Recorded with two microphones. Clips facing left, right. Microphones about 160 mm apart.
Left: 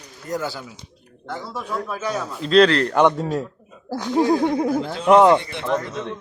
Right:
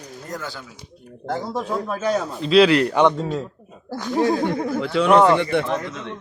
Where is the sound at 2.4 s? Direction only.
5° right (ahead or behind).